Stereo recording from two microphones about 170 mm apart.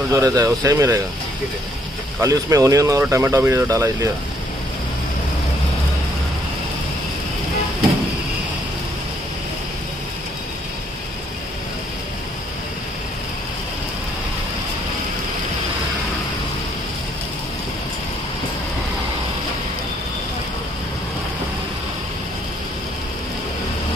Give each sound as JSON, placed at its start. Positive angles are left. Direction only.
{"t": 0.1, "sound": "speech", "side_deg": -20}
{"t": 2.1, "sound": "speech", "side_deg": -20}